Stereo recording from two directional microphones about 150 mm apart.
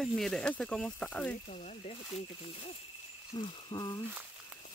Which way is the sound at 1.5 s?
50° left (ahead or behind).